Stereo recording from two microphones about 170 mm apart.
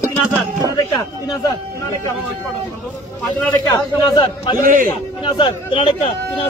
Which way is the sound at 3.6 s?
25° left (ahead or behind).